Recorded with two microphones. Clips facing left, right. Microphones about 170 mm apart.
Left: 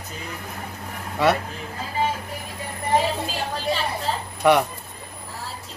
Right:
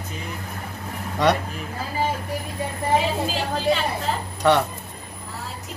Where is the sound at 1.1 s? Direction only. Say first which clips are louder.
Even; 5° left (ahead or behind).